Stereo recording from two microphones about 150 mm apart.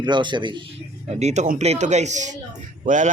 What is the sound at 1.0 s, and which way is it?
A man's voice, 45° right (ahead or behind).